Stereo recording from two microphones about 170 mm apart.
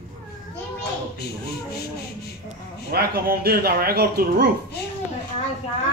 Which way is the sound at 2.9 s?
65° right (ahead or behind).